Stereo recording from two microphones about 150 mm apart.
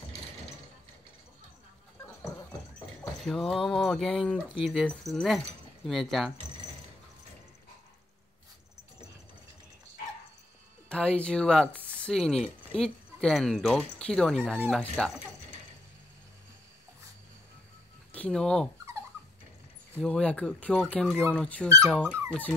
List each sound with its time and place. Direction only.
3.2 s speech: 5° left (ahead or behind)
10.9 s speech: 5° left (ahead or behind)
18.1 s speech: 5° left (ahead or behind)
20.0 s speech: 5° left (ahead or behind)